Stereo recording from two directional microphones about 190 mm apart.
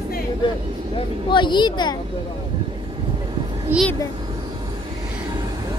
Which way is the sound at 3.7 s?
10° right (ahead or behind).